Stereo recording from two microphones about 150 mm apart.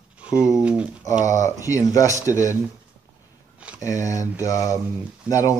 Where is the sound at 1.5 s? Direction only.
20° left (ahead or behind).